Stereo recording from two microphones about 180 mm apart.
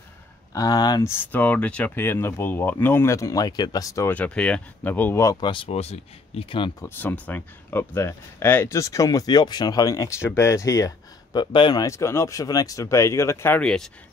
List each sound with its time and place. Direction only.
0.5 s speech: 20° left (ahead or behind)
1.2 s speech: 10° left (ahead or behind); by 6.9 s 30° left (ahead or behind)
7.0 s speech: 10° left (ahead or behind)